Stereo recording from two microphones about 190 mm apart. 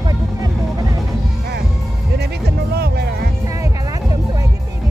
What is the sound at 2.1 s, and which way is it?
Music, 60° right (ahead or behind).